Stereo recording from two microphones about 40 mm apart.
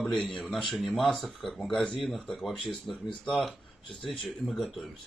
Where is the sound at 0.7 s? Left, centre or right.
Centre.